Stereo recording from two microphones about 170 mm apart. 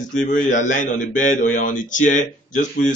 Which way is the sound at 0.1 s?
50° left (ahead or behind).